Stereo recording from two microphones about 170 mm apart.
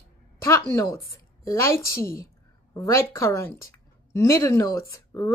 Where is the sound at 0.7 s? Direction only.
20° left (ahead or behind).